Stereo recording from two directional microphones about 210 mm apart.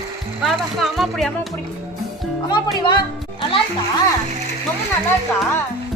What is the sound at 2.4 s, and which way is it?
Speech, 20° left (ahead or behind).